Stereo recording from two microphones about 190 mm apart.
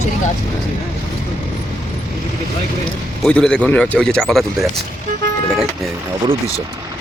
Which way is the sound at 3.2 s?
5° left (ahead or behind).